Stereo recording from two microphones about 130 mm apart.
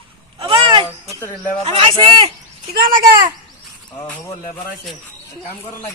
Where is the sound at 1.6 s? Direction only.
45° right (ahead or behind).